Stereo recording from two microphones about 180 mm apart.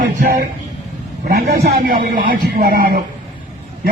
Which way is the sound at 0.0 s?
55° right (ahead or behind).